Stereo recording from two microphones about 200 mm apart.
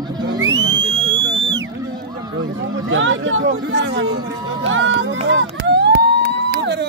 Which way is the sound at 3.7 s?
60° right (ahead or behind).